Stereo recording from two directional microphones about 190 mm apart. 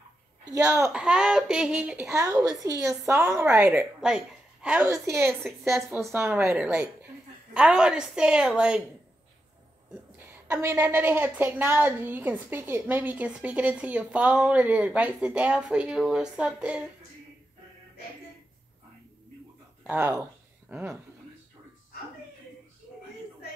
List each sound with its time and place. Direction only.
0.5 s a woman's voice: 15° right (ahead or behind)
0.9 s a woman's voice: 5° right (ahead or behind)
4.0 s a sound: 5° right (ahead or behind)
4.8 s a woman's voice: 15° right (ahead or behind)
10.1 s a woman's voice: 15° right (ahead or behind)
19.8 s speech: 10° right (ahead or behind)